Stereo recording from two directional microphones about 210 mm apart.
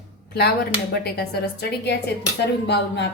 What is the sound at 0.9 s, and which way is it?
A woman's voice, 50° left (ahead or behind).